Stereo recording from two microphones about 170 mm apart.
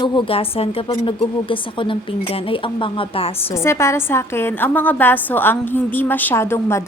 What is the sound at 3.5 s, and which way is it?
A woman's voice, 15° left (ahead or behind).